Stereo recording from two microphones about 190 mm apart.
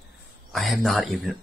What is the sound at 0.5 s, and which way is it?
Speech, centre (ahead or behind).